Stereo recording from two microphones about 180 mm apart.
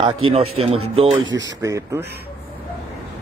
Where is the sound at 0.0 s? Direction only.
30° right (ahead or behind).